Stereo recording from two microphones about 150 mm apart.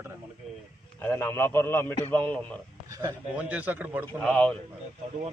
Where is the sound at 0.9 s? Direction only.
15° left (ahead or behind).